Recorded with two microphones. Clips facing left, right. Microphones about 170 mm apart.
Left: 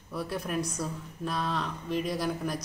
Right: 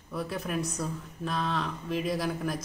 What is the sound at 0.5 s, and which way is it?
Speech, 25° right (ahead or behind).